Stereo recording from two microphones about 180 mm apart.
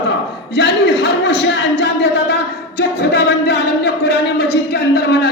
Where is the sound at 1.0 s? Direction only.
70° left (ahead or behind).